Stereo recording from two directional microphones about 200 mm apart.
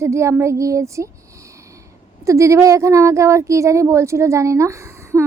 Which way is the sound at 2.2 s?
15° right (ahead or behind).